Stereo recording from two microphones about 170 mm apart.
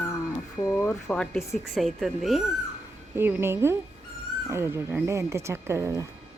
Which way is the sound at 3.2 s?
15° right (ahead or behind).